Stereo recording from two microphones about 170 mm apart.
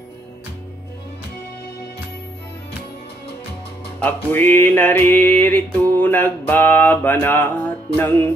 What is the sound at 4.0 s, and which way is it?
Music, 10° left (ahead or behind).